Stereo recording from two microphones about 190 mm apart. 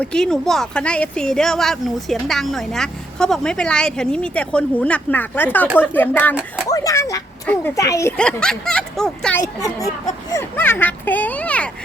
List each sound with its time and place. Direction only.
0.0 s a child's voice: 5° left (ahead or behind)
9.4 s a child's voice: 20° left (ahead or behind)